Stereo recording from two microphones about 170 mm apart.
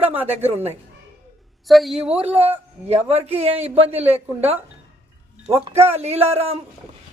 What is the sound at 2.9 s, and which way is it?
Speech, 35° right (ahead or behind).